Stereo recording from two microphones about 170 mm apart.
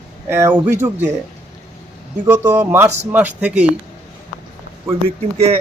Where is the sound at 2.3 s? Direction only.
15° right (ahead or behind).